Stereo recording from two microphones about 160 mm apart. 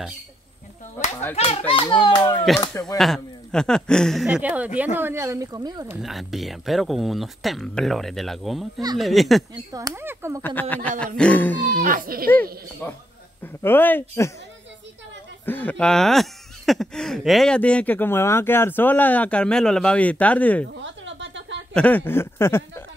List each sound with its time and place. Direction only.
1.3 s speech: 35° left (ahead or behind)
3.0 s speech: centre (ahead or behind); by 5.9 s 25° right (ahead or behind)
5.9 s speech: centre (ahead or behind)
9.7 s speech: 20° right (ahead or behind)
10.4 s speech: 10° left (ahead or behind)
11.7 s speech: 55° right (ahead or behind)
12.8 s speech: 15° left (ahead or behind)
15.4 s speech: 10° left (ahead or behind)
21.7 s speech: 10° left (ahead or behind)